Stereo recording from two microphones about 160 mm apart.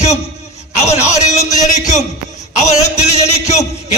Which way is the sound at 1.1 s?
45° left (ahead or behind).